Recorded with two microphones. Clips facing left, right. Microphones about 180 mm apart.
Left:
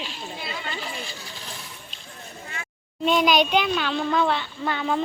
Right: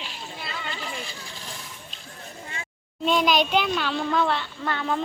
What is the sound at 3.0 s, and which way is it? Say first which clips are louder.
A child's voice: left 2 dB; centre (ahead or behind).